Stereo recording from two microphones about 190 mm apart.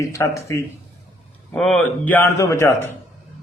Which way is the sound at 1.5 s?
5° left (ahead or behind).